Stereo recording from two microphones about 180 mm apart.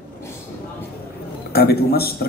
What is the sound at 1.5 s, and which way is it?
Speech, 60° left (ahead or behind).